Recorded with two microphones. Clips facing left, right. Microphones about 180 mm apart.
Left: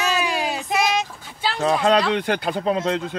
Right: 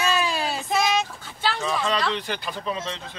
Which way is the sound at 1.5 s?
60° left (ahead or behind).